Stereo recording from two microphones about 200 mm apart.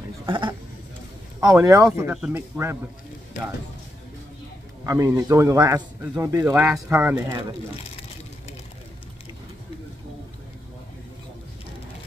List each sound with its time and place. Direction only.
0.3 s speech: 25° right (ahead or behind)
4.8 s speech: 15° right (ahead or behind)